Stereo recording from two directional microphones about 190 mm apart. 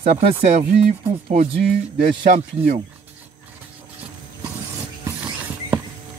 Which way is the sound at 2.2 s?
40° right (ahead or behind).